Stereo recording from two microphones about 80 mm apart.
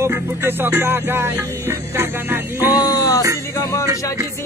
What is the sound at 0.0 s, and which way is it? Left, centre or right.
Speech, right.